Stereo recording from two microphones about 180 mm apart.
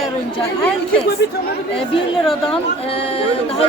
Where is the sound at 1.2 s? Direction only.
75° left (ahead or behind).